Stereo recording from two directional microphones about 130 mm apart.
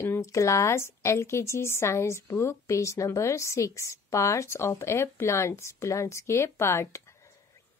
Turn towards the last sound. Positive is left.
turn(degrees=20)  # may be behind; listen again after turning